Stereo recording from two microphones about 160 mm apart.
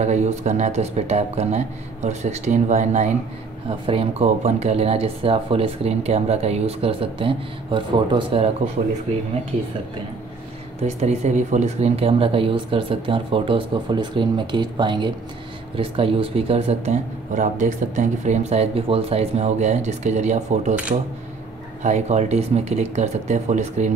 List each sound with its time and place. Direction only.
0.0 s speech: 45° right (ahead or behind)
3.6 s speech: 35° right (ahead or behind)
11.0 s speech: 45° right (ahead or behind)
21.8 s speech: 45° right (ahead or behind)